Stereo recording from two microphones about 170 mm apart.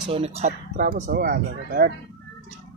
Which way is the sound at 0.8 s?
55° right (ahead or behind).